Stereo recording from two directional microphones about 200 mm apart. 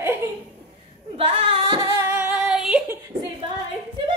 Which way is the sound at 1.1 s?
30° right (ahead or behind).